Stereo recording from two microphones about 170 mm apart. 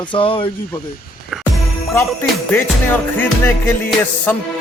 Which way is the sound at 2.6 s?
10° left (ahead or behind).